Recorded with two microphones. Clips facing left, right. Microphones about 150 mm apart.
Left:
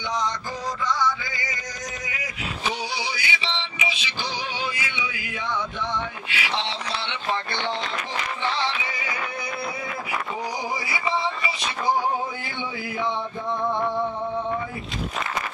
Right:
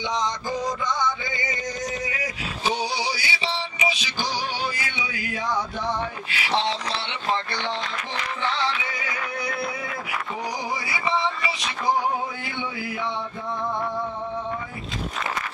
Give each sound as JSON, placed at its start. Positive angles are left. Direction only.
{"t": 0.8, "sound": "music", "side_deg": -20}
{"t": 2.0, "sound": "male singing", "side_deg": -30}